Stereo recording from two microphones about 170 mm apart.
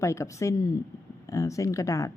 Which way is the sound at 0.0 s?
15° left (ahead or behind).